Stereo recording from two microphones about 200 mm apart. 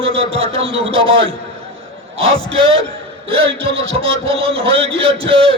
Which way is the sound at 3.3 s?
30° right (ahead or behind).